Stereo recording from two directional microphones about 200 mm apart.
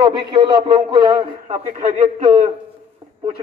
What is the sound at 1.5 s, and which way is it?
A man's voice, 35° right (ahead or behind).